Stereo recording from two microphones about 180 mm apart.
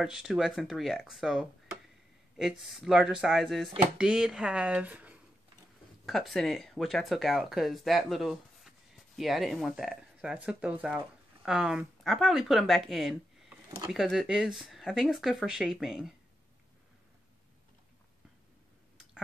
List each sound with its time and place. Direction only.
0.0 s speech: centre (ahead or behind)
13.7 s speech: 20° right (ahead or behind)
13.9 s speech: 5° right (ahead or behind)